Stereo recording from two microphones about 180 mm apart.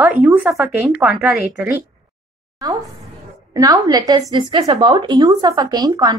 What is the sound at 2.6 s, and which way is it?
A woman's voice, 20° right (ahead or behind).